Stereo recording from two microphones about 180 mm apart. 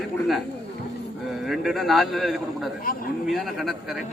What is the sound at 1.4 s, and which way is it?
Speech, centre (ahead or behind).